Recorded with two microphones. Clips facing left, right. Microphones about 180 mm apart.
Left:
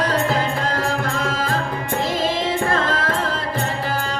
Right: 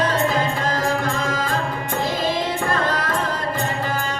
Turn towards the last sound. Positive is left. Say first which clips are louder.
# left 1 dB
turn(degrees=25)  # may be behind; listen again after turning